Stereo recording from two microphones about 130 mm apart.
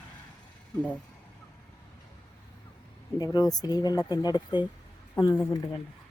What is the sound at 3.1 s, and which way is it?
Speech, 30° left (ahead or behind).